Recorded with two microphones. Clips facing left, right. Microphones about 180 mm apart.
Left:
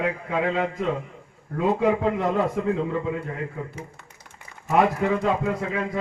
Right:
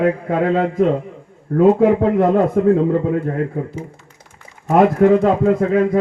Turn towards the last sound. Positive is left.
turn(degrees=-55)  # may be behind; listen again after turning